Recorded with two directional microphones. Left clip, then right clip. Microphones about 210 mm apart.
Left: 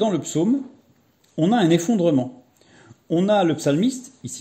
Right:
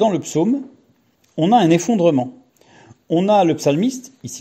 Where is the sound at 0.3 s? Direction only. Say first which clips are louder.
Right 3 dB; 25° right (ahead or behind).